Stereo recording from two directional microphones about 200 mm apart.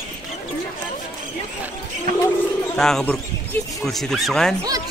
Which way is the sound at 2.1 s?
45° right (ahead or behind).